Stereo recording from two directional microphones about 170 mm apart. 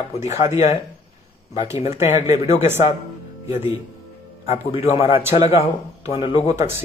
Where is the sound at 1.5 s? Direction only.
40° left (ahead or behind).